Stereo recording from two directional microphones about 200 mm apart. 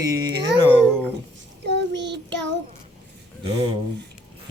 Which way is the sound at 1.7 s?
60° right (ahead or behind).